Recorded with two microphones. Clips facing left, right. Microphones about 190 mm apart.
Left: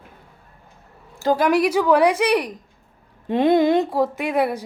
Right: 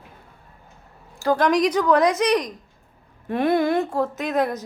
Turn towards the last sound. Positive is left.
turn(degrees=10)  # may be behind; listen again after turning